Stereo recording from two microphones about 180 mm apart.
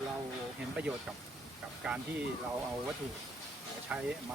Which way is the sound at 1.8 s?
10° right (ahead or behind).